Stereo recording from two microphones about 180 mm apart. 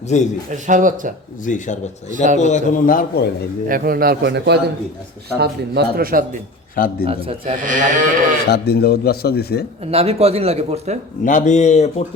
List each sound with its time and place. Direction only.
0.1 s speech: 40° left (ahead or behind)
0.5 s speech: 45° right (ahead or behind)
1.5 s a man's voice: 45° left (ahead or behind)
2.0 s speech: 45° right (ahead or behind)
2.4 s a man's voice: 40° left (ahead or behind)
3.7 s a man's voice: 55° right (ahead or behind)
7.0 s speech: 30° right (ahead or behind)
7.6 s speech: 45° right (ahead or behind)
8.4 s speech: 65° left (ahead or behind)
9.8 s speech: 35° right (ahead or behind)
11.2 s speech: 45° left (ahead or behind)